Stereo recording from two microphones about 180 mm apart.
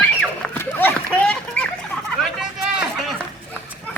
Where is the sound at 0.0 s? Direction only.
10° left (ahead or behind).